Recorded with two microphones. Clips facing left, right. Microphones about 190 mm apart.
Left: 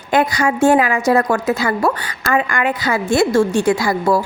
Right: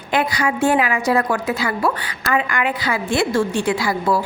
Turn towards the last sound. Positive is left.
turn(degrees=45)  # may be behind; listen again after turning